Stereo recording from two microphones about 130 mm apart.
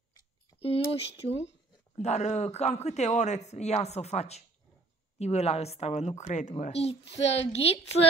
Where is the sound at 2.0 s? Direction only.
60° left (ahead or behind).